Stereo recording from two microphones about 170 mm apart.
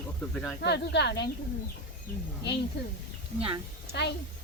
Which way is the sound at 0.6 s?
85° left.